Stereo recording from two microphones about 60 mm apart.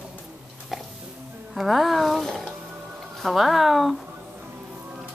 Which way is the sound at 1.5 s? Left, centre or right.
Centre.